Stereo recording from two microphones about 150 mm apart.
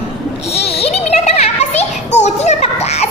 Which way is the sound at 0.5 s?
40° left (ahead or behind).